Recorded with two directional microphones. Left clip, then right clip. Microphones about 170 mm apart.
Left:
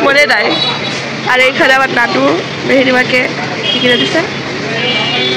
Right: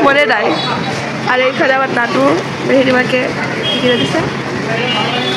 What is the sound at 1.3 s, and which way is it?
Speech, 10° left (ahead or behind).